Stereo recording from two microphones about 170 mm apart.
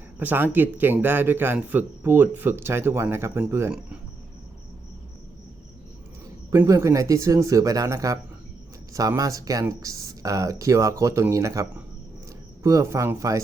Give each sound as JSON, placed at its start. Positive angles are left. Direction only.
{"t": 0.2, "sound": "speech", "side_deg": -10}
{"t": 6.5, "sound": "speech", "side_deg": -20}